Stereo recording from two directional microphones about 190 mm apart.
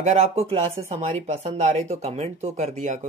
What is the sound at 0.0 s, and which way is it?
Speech, 35° right (ahead or behind).